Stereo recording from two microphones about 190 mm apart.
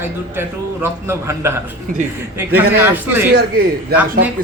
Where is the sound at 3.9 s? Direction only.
55° right (ahead or behind).